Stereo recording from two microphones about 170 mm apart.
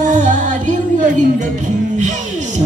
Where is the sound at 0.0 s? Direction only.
45° right (ahead or behind).